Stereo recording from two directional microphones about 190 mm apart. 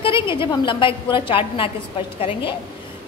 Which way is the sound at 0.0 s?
25° left (ahead or behind).